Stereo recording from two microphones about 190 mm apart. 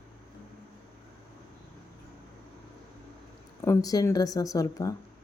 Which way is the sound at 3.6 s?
15° left (ahead or behind).